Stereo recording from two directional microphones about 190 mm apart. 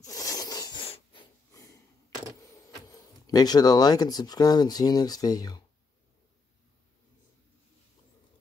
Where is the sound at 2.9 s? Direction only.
20° left (ahead or behind).